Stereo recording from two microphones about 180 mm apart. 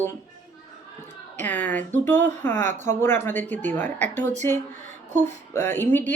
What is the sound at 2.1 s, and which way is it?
Speech, 40° right (ahead or behind).